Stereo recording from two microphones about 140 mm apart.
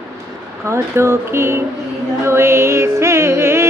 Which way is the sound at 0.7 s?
20° right (ahead or behind).